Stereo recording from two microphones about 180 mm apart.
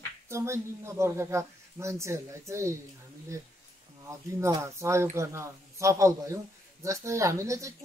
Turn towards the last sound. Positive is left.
turn(degrees=-15)  # may be behind; listen again after turning